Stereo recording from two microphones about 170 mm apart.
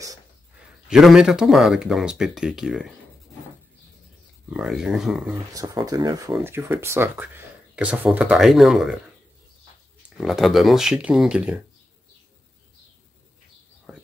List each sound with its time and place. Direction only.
0.8 s speech: 5° right (ahead or behind)
4.5 s speech: centre (ahead or behind)
5.5 s speech: 20° right (ahead or behind); by 8.9 s centre (ahead or behind)
10.0 s speech: centre (ahead or behind)
13.9 s whispering: 5° right (ahead or behind)